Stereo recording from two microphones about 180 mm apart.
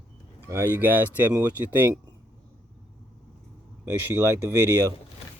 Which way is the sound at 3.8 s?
10° right (ahead or behind).